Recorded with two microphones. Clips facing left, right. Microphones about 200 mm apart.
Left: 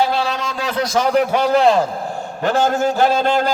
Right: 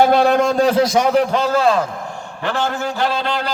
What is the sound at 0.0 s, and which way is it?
Speech, 55° right (ahead or behind).